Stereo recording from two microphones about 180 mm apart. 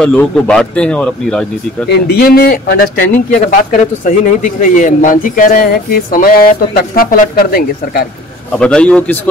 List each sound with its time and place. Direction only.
0.0 s speech: 5° left (ahead or behind)
1.9 s speech: 60° left (ahead or behind)
8.5 s a man's voice: 5° left (ahead or behind)